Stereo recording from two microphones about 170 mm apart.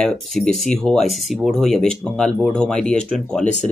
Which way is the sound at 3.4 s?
40° left (ahead or behind).